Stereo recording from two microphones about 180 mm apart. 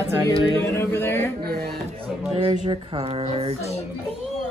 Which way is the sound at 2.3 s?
30° right (ahead or behind).